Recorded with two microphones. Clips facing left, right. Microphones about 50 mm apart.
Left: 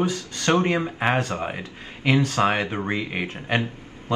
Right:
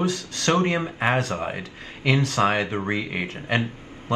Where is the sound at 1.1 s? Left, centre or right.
Left.